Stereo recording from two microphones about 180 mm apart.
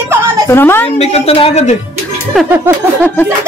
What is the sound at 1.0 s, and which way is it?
Speech, 35° left (ahead or behind).